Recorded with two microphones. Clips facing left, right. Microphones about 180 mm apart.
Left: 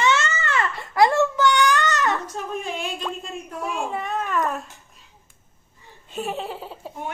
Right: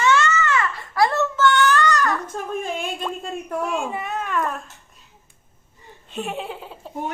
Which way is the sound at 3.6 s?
5° right (ahead or behind).